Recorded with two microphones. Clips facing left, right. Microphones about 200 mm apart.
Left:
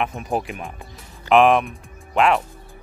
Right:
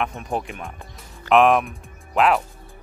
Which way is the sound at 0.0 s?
5° left (ahead or behind).